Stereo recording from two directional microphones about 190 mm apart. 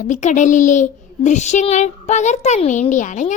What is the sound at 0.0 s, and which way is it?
A child's voice, 40° left (ahead or behind).